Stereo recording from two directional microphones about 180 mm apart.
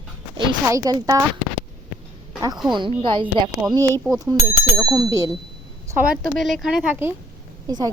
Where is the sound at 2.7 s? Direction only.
25° right (ahead or behind).